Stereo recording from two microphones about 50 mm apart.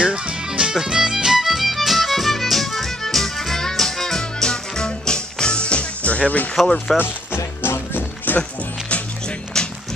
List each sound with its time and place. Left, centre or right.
0.0 s music: centre; by 6.5 s left
7.0 s music: left
8.4 s music: left
9.5 s music: centre